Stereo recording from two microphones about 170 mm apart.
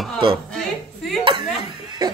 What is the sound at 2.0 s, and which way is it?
Music, 25° right (ahead or behind).